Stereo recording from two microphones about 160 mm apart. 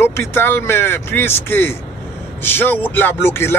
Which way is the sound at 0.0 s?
15° left (ahead or behind).